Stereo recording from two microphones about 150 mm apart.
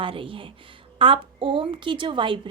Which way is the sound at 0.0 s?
35° right (ahead or behind).